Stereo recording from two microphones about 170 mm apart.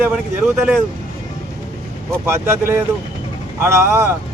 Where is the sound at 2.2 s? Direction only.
15° right (ahead or behind).